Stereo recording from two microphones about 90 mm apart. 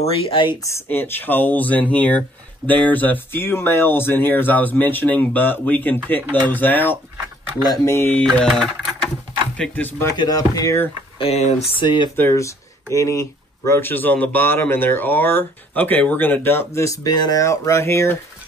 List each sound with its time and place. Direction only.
0.3 s speech: 65° left (ahead or behind)
0.8 s speech: 25° left (ahead or behind)
8.5 s speech: centre (ahead or behind)
9.6 s speech: 20° left (ahead or behind)
10.1 s speech: 45° left (ahead or behind)
11.1 s speech: 90° left; by 12.1 s 65° left (ahead or behind)
12.2 s speech: 30° left (ahead or behind)